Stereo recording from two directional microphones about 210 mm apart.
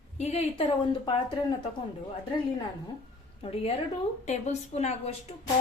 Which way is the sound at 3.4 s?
30° left (ahead or behind).